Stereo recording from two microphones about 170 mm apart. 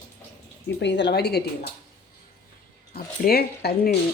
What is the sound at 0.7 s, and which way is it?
Speech, 90° left.